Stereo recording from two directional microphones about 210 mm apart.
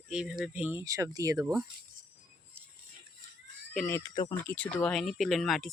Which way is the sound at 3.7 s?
10° left (ahead or behind).